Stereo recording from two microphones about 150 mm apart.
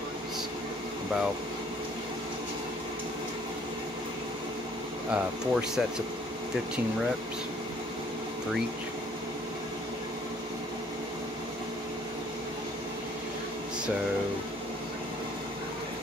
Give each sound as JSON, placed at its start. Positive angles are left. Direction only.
{"t": 5.1, "sound": "speech", "side_deg": -5}